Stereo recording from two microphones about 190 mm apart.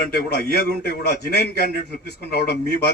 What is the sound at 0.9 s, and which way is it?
A man's voice, 55° left (ahead or behind).